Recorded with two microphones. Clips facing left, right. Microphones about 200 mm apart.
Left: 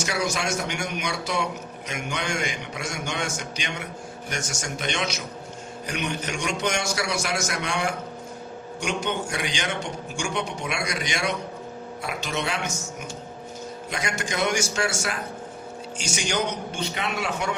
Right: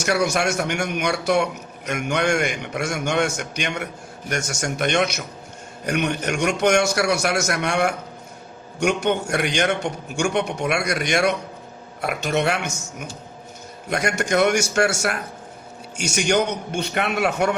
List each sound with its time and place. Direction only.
0.0 s a man's voice: 65° right (ahead or behind)